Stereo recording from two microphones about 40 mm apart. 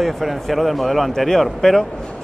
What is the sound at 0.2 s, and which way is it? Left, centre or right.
A man's voice, centre.